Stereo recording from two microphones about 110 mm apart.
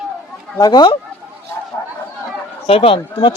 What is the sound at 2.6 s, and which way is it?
Speech, 60° left (ahead or behind).